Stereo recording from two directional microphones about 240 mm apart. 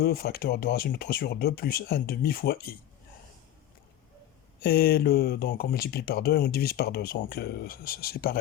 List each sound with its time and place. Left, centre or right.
0.0 s speech: left
4.6 s speech: left